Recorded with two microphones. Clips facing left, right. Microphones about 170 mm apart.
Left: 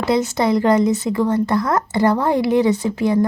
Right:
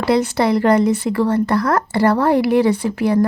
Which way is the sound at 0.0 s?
20° left (ahead or behind).